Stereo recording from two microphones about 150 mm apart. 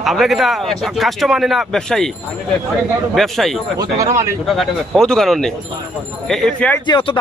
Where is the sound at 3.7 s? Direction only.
25° right (ahead or behind).